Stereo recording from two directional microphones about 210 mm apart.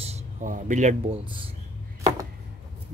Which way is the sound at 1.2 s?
25° right (ahead or behind).